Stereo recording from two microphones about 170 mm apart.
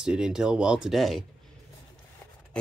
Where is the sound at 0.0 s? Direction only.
5° right (ahead or behind).